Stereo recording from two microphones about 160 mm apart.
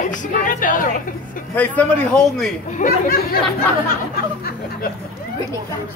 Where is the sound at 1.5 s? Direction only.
10° left (ahead or behind).